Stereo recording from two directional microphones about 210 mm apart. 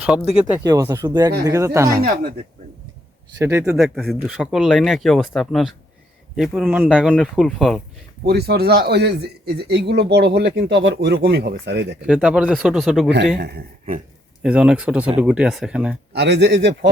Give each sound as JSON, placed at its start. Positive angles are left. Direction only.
{"t": 0.6, "sound": "speech", "side_deg": -15}
{"t": 2.0, "sound": "speech", "side_deg": -45}
{"t": 3.3, "sound": "speech", "side_deg": -15}
{"t": 8.2, "sound": "speech", "side_deg": -50}
{"t": 12.0, "sound": "speech", "side_deg": -5}
{"t": 13.4, "sound": "speech", "side_deg": -50}
{"t": 14.4, "sound": "speech", "side_deg": -5}
{"t": 16.1, "sound": "speech", "side_deg": -55}